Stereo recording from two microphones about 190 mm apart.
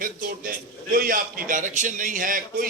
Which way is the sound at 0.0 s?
50° right (ahead or behind).